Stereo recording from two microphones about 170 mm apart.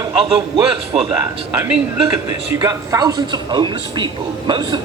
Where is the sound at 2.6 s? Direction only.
25° right (ahead or behind).